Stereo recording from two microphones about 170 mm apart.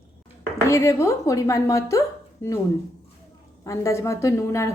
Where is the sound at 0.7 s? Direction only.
15° left (ahead or behind).